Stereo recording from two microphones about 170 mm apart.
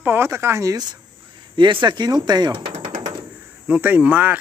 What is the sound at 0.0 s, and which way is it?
Speech, 15° right (ahead or behind).